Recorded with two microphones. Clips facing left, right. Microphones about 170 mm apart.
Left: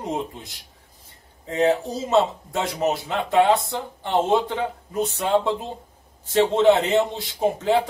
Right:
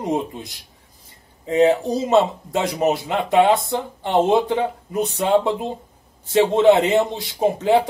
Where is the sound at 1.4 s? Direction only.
15° right (ahead or behind).